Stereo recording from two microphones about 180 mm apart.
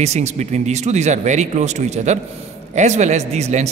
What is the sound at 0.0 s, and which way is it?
A man's voice, 40° right (ahead or behind).